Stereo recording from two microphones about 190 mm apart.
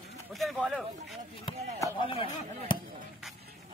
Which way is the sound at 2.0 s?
30° left (ahead or behind).